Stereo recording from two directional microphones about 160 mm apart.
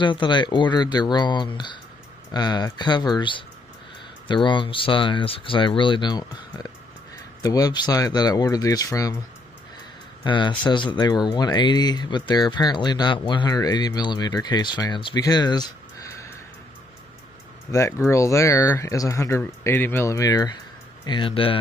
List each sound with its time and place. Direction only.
0.0 s speech: 30° left (ahead or behind)
10.2 s speech: 30° left (ahead or behind)
17.6 s speech: 15° left (ahead or behind); by 21.5 s 35° left (ahead or behind)